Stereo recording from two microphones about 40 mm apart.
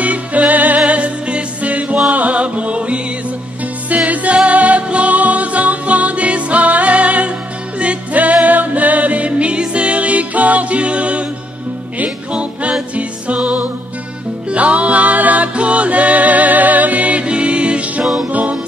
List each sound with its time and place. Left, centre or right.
0.0 s music: right
18.0 s music: centre
18.3 s music: right